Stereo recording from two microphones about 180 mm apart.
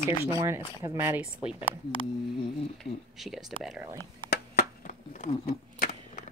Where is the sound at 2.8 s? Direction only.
Centre (ahead or behind).